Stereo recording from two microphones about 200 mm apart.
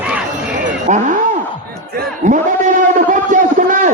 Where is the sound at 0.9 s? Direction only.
40° right (ahead or behind).